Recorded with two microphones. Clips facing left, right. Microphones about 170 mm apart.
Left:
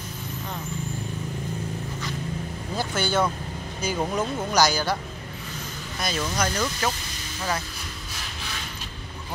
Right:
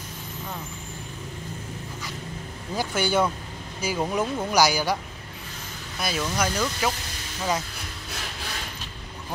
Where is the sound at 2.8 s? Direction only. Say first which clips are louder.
Right 1 dB; 10° right (ahead or behind).